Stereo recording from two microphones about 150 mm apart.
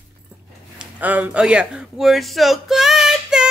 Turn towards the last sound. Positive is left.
turn(degrees=-5)  # may be behind; listen again after turning